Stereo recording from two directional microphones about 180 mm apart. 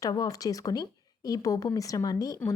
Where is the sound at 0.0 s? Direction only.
20° left (ahead or behind).